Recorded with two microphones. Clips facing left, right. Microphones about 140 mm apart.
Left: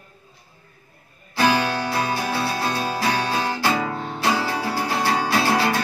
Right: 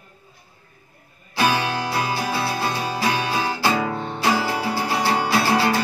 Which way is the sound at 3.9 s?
Centre (ahead or behind).